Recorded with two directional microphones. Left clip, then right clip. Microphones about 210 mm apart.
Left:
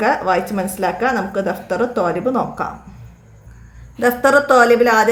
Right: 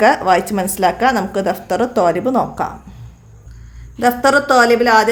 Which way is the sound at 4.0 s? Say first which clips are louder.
Even; 20° right (ahead or behind).